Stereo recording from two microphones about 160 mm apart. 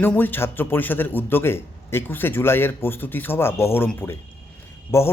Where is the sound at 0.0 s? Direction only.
10° left (ahead or behind).